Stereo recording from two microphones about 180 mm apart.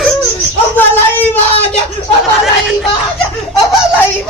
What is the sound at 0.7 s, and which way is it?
Speech, 10° left (ahead or behind).